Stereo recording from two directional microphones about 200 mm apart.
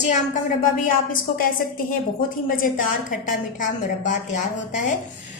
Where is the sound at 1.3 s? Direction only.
45° left (ahead or behind).